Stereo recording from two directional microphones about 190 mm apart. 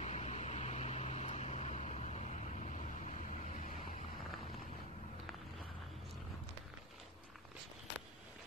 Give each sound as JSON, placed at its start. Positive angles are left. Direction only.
{"t": 0.0, "sound": "vehicle", "side_deg": 35}